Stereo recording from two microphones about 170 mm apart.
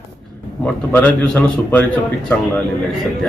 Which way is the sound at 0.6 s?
10° left (ahead or behind).